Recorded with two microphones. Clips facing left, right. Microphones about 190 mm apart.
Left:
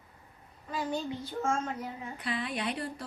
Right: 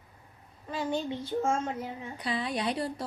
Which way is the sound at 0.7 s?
25° right (ahead or behind).